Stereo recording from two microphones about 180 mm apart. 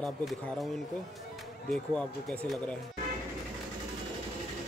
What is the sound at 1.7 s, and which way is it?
Speech, 5° left (ahead or behind).